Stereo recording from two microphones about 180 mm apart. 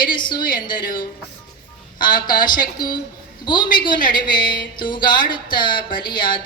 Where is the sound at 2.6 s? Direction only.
25° left (ahead or behind).